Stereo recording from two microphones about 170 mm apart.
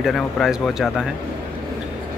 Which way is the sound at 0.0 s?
Centre (ahead or behind).